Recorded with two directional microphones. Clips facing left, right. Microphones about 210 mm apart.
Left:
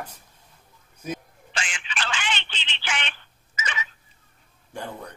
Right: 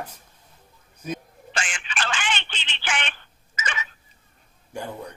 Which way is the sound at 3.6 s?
50° right (ahead or behind).